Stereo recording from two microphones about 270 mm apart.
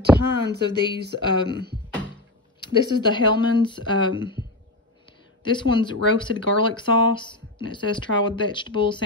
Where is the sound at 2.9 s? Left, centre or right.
Centre.